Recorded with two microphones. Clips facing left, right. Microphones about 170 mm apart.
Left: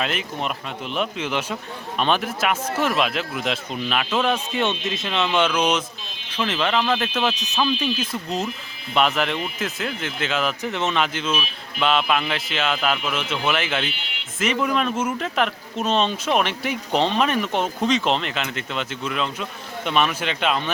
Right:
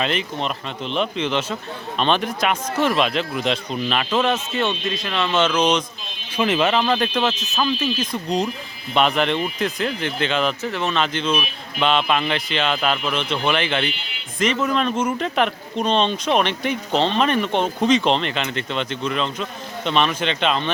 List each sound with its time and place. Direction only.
0.0 s speech: 5° left (ahead or behind)
6.3 s speech: 10° right (ahead or behind); by 10.7 s 5° left (ahead or behind)
10.7 s speech: 20° left (ahead or behind)
11.0 s speech: 5° left (ahead or behind)